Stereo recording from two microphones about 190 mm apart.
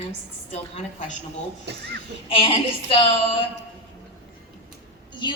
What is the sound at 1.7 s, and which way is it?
Speech, 60° right (ahead or behind).